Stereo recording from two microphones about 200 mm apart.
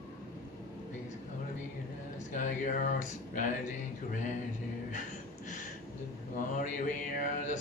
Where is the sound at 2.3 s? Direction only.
40° left (ahead or behind).